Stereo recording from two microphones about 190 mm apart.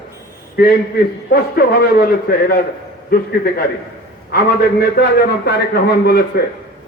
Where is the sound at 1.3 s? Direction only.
55° left (ahead or behind).